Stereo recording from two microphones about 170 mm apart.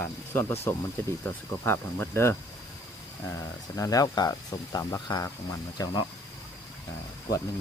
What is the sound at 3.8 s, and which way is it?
Speech, 20° left (ahead or behind).